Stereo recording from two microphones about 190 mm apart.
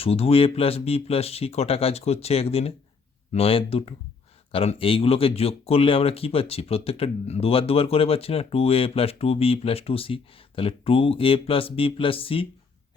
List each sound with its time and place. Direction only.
0.0 s speech: 30° left (ahead or behind)